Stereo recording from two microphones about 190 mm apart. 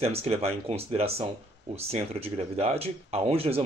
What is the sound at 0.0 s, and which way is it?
Speech, 30° right (ahead or behind).